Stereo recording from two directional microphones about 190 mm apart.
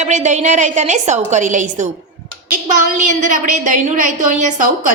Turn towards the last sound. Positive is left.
turn(degrees=-40)  # may be behind; listen again after turning